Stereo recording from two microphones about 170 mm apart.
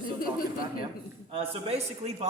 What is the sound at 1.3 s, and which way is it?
Speech, 35° right (ahead or behind).